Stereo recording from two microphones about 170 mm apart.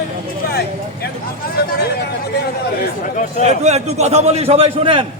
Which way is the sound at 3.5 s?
40° right (ahead or behind).